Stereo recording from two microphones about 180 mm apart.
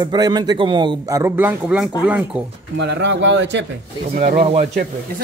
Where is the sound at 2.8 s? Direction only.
75° right (ahead or behind).